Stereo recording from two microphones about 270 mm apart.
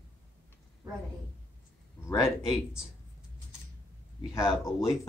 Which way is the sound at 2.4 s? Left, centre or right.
Centre.